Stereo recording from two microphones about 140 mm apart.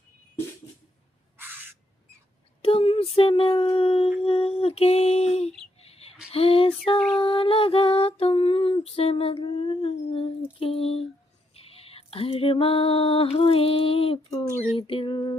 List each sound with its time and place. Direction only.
1.4 s crow: 15° right (ahead or behind)
2.6 s a sound: 40° left (ahead or behind)
6.3 s female singing: 40° left (ahead or behind)
7.2 s lullaby: 40° left (ahead or behind)
11.6 s female singing: 45° left (ahead or behind)